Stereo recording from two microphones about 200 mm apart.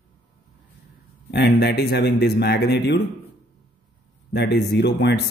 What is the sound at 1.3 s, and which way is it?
A man's voice, 55° left (ahead or behind).